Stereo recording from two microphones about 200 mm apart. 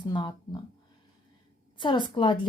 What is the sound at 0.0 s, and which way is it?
Speech, 20° left (ahead or behind).